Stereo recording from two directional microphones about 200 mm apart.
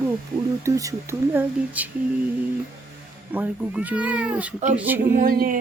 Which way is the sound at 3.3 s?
10° right (ahead or behind).